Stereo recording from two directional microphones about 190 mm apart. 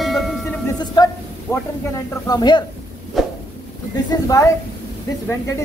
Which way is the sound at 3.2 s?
Centre (ahead or behind).